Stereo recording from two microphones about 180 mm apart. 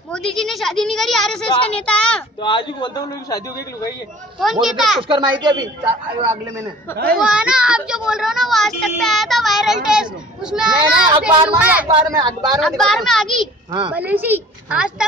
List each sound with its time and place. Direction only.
0.1 s speech: 5° left (ahead or behind)
2.4 s a man's voice: 25° left (ahead or behind)
4.4 s speech: centre (ahead or behind)
5.0 s speech: 25° right (ahead or behind)
7.2 s speech: 5° right (ahead or behind)
10.7 s speech: 25° right (ahead or behind)
11.2 s a woman's voice: 10° right (ahead or behind)
11.9 s speech: 25° right (ahead or behind)
12.5 s speech: centre (ahead or behind)
13.7 s a woman's voice: 25° right (ahead or behind)
13.9 s a woman's voice: 10° right (ahead or behind)